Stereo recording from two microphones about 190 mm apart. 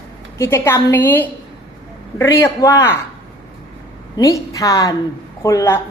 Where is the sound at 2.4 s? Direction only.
15° left (ahead or behind).